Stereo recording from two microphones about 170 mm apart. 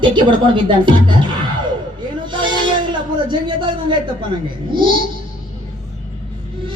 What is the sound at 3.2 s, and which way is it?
Speech, 30° right (ahead or behind).